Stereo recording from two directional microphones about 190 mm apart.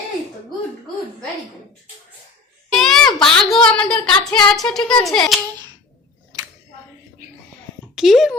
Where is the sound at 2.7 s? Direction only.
Centre (ahead or behind).